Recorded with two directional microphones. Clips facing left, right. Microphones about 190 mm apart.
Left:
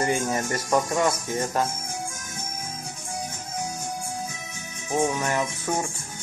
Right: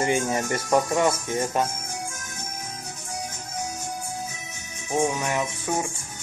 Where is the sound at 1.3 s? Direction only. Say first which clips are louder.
Right 1 dB; 25° right (ahead or behind).